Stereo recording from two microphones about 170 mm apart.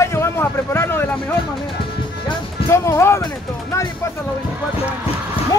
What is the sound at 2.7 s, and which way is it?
Speech, 15° left (ahead or behind).